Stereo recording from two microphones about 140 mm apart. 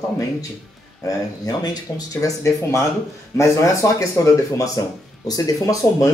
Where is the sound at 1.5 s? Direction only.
25° left (ahead or behind).